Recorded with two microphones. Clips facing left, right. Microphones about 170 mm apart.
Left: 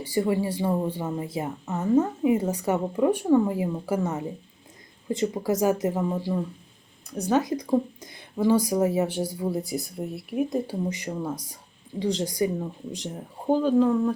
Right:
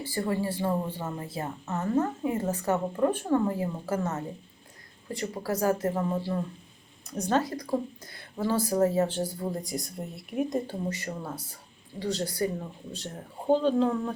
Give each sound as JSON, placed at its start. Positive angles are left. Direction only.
{"t": 0.0, "sound": "speech", "side_deg": 15}
{"t": 10.8, "sound": "speech", "side_deg": 15}